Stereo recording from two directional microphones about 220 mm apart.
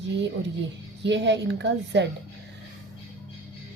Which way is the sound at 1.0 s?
55° right (ahead or behind).